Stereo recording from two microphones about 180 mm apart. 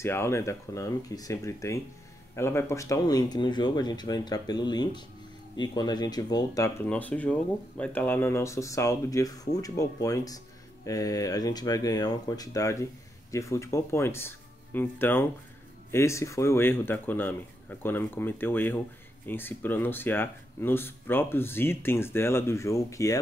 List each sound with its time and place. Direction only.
0.0 s speech: 15° left (ahead or behind)